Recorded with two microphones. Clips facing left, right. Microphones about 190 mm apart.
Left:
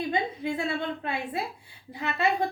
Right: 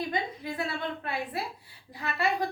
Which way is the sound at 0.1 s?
25° left (ahead or behind).